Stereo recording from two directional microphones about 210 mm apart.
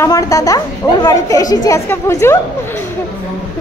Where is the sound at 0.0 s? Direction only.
15° left (ahead or behind).